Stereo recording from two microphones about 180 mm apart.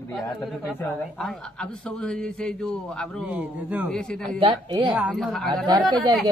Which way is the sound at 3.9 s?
5° left (ahead or behind).